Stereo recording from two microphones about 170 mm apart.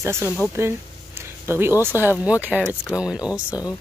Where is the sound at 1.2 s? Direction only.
15° right (ahead or behind).